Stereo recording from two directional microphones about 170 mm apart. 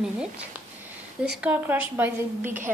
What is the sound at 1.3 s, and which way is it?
A woman's voice, 10° right (ahead or behind).